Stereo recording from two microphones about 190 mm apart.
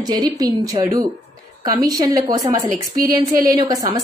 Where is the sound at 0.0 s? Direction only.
20° right (ahead or behind).